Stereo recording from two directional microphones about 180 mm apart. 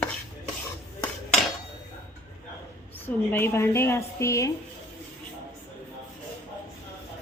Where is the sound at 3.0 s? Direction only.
10° left (ahead or behind).